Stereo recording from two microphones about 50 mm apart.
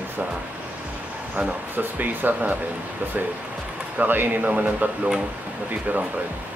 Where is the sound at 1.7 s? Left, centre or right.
Right.